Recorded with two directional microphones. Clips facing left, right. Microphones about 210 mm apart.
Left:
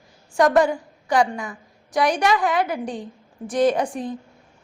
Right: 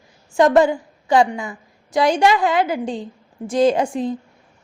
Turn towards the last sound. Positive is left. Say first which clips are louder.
# right 3 dB
turn(degrees=-25)  # may be behind; listen again after turning